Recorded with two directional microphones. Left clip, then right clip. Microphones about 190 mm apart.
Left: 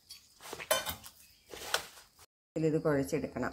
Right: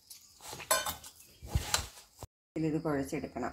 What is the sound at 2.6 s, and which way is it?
Speech, 20° left (ahead or behind).